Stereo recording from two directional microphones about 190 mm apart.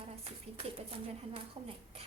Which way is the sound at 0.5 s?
30° right (ahead or behind).